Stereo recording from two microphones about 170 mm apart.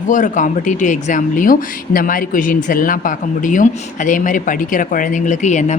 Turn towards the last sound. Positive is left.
turn(degrees=45)  # may be behind; listen again after turning